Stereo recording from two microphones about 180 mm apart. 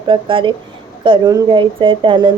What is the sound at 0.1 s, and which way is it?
Speech, 30° right (ahead or behind).